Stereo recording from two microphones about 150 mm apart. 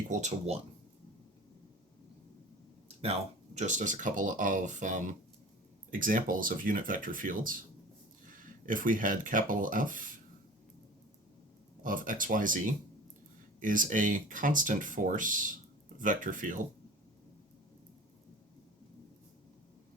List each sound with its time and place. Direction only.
0.1 s speech: 50° right (ahead or behind)
3.0 s speech: 45° right (ahead or behind); by 10.1 s 65° right (ahead or behind)
11.8 s speech: 65° right (ahead or behind)